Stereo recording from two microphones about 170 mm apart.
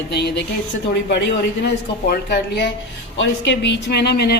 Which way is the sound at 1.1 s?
85° left.